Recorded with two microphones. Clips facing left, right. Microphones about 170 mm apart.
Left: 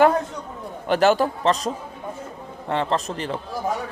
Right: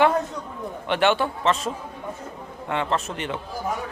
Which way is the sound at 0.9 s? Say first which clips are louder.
Left 3 dB; 40° left (ahead or behind).